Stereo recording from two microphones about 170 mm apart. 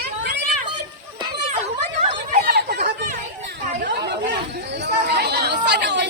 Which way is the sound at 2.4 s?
75° right (ahead or behind).